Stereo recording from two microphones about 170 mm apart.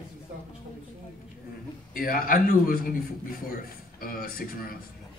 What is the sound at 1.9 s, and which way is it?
A man's voice, 60° left (ahead or behind).